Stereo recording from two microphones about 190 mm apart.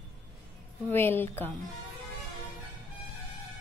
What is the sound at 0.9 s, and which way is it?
Speech, 10° left (ahead or behind).